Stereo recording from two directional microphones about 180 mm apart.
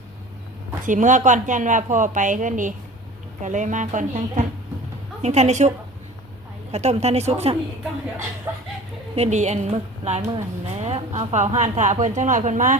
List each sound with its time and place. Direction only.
0.9 s a woman's voice: 45° right (ahead or behind)
8.5 s speech: 10° right (ahead or behind)
9.1 s a woman's voice: 35° right (ahead or behind)